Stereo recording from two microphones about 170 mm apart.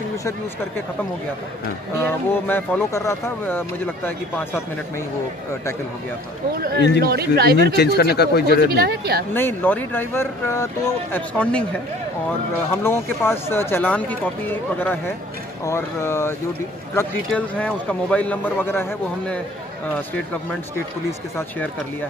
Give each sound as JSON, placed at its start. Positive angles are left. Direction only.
{"t": 2.0, "sound": "speech", "side_deg": 10}
{"t": 7.0, "sound": "speech", "side_deg": -65}
{"t": 7.7, "sound": "speech", "side_deg": 75}
{"t": 8.7, "sound": "speech", "side_deg": -70}
{"t": 9.3, "sound": "speech", "side_deg": 15}
{"t": 12.8, "sound": "speech", "side_deg": 15}